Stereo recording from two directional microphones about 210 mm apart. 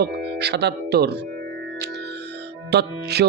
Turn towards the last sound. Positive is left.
turn(degrees=-50)  # may be behind; listen again after turning